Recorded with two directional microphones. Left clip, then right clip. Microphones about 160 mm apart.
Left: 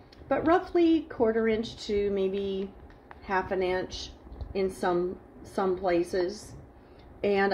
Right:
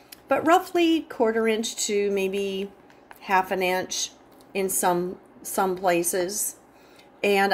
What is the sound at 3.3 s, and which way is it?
A woman's voice, 25° right (ahead or behind).